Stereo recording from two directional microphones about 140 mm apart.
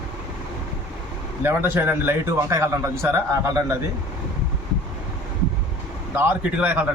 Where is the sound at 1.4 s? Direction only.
15° right (ahead or behind).